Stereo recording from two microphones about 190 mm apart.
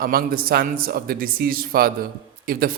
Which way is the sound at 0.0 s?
50° right (ahead or behind).